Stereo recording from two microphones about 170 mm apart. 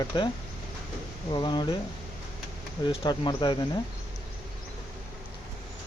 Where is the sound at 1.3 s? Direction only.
25° left (ahead or behind).